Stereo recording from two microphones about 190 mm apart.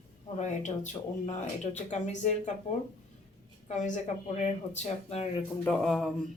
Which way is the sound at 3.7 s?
40° left (ahead or behind).